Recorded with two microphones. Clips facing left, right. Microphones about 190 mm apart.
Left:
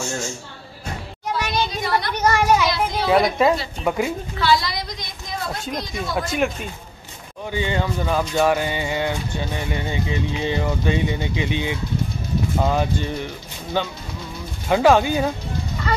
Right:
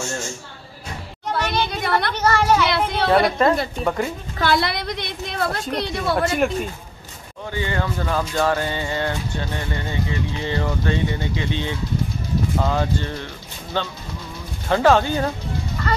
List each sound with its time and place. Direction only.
1.3 s a sound: 60° right (ahead or behind)
2.1 s speech: 15° left (ahead or behind)
2.7 s children playing: 65° right (ahead or behind)
3.1 s speech: 5° left (ahead or behind)
4.4 s a woman's voice: 55° right (ahead or behind)
7.5 s speech: 20° left (ahead or behind)